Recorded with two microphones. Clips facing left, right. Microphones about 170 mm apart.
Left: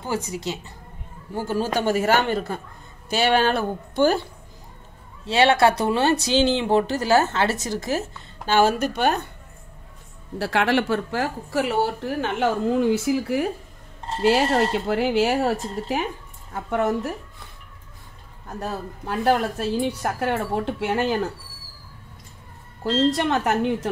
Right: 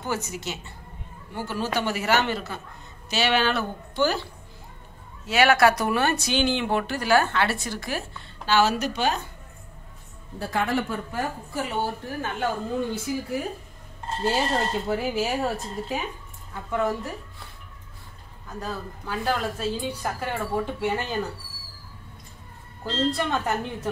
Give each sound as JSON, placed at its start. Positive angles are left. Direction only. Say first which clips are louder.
{"t": 0.3, "sound": "a woman's voice", "louder": "left 5 dB", "side_deg": 35}
{"t": 1.3, "sound": "a man's voice", "louder": "left 4 dB", "side_deg": 45}
{"t": 5.2, "sound": "speech", "louder": "left 2 dB", "side_deg": 30}
{"t": 8.5, "sound": "a man's voice", "louder": "left 3 dB", "side_deg": 50}
{"t": 10.4, "sound": "speech", "louder": "left 5 dB", "side_deg": 75}
{"t": 16.5, "sound": "a woman's voice", "louder": "left 3 dB", "side_deg": 60}
{"t": 18.6, "sound": "a woman's voice", "louder": "left 3 dB", "side_deg": 60}
{"t": 23.1, "sound": "speech", "louder": "left 4 dB", "side_deg": 75}